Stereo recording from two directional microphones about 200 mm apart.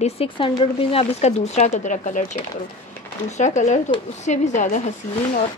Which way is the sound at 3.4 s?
35° left (ahead or behind).